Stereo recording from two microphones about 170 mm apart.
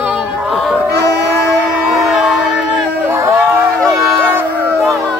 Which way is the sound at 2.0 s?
5° right (ahead or behind).